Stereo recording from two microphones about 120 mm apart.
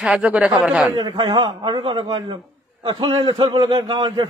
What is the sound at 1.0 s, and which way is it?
A man's voice, 40° right (ahead or behind).